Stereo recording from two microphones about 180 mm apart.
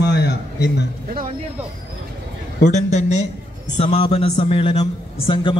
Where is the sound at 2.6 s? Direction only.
40° left (ahead or behind).